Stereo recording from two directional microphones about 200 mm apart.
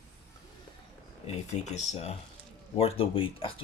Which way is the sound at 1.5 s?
35° left (ahead or behind).